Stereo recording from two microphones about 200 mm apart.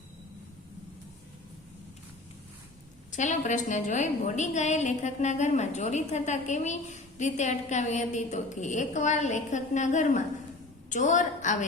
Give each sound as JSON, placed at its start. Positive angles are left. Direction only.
{"t": 3.1, "sound": "a woman's voice", "side_deg": 40}